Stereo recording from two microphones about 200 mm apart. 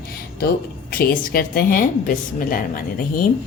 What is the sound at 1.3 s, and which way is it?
A woman's voice, 45° left (ahead or behind).